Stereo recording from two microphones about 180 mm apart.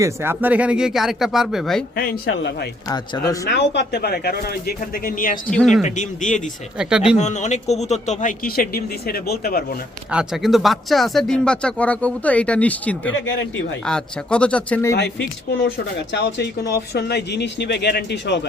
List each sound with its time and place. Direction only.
0.0 s speech: 15° right (ahead or behind)
2.0 s speech: 65° left (ahead or behind)
2.8 s speech: 20° left (ahead or behind)
3.5 s speech: 75° left (ahead or behind); by 5.4 s 50° left (ahead or behind)
5.5 s speech: 5° left (ahead or behind)
5.8 s speech: 45° left (ahead or behind)
6.7 s speech: 5° right (ahead or behind)
7.2 s a man's voice: 40° left (ahead or behind)
8.2 s speech: 50° left (ahead or behind)
10.1 s speech: 5° right (ahead or behind)
13.1 s speech: 90° left
13.8 s speech: 5° left (ahead or behind)
16.1 s speech: 70° left (ahead or behind)